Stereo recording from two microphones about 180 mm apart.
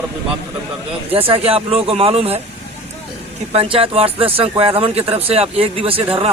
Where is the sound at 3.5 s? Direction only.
30° right (ahead or behind).